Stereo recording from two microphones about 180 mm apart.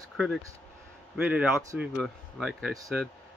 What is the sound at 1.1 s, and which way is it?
Speech, 5° right (ahead or behind).